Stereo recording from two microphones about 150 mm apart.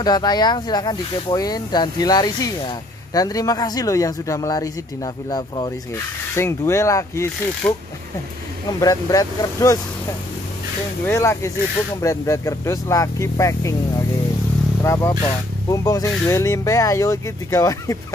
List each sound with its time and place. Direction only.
0.0 s speech: 25° left (ahead or behind)
8.7 s speech: 25° left (ahead or behind)
11.1 s speech: 20° left (ahead or behind)